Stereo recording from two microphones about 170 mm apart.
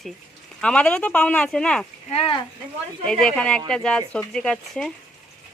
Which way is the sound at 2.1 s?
35° left (ahead or behind).